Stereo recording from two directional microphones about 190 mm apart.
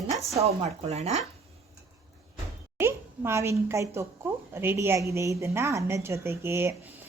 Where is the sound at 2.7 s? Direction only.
15° right (ahead or behind).